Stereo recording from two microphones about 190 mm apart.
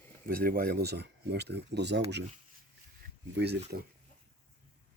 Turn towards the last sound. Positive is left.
turn(degrees=-60)  # may be behind; listen again after turning